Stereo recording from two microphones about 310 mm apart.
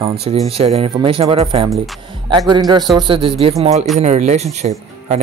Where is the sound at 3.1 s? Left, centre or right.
Centre.